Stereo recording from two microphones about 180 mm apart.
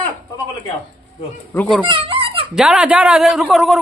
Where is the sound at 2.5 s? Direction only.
5° right (ahead or behind).